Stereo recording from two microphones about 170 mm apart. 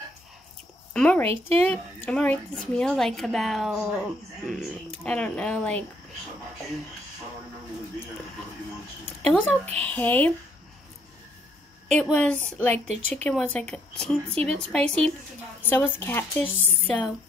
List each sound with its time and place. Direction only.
0.9 s a woman's voice: 10° left (ahead or behind)
9.8 s a woman's voice: 10° left (ahead or behind)
11.9 s a woman's voice: 5° left (ahead or behind)
12.7 s speech: 40° right (ahead or behind)
13.1 s a woman's voice: 5° left (ahead or behind)